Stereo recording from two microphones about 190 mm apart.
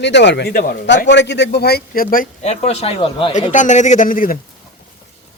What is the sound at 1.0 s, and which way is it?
Speech, 65° left (ahead or behind).